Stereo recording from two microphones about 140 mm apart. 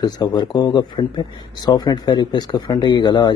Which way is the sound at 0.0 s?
30° left (ahead or behind).